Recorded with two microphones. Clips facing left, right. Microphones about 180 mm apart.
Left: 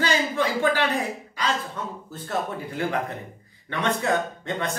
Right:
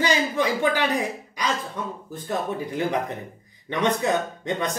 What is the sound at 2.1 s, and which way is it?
Speech, 15° right (ahead or behind).